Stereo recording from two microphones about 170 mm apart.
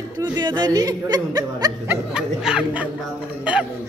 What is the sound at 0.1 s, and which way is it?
Speech, 25° right (ahead or behind).